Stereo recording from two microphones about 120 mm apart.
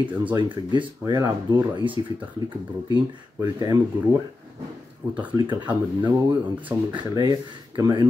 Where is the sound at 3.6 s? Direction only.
30° right (ahead or behind).